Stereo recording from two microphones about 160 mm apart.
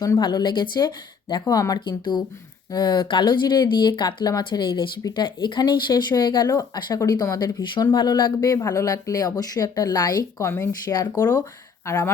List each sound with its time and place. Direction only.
0.0 s speech: 25° left (ahead or behind)